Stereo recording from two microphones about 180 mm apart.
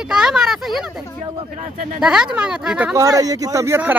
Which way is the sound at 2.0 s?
5° right (ahead or behind).